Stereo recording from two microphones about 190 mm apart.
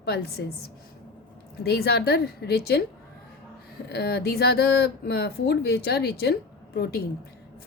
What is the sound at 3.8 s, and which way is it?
A woman's voice, 60° left (ahead or behind).